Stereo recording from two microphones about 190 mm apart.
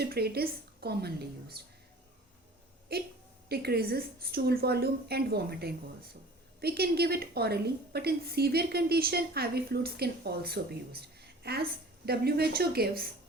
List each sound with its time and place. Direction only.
0.0 s a woman's voice: 55° right (ahead or behind)
2.9 s a woman's voice: 55° right (ahead or behind)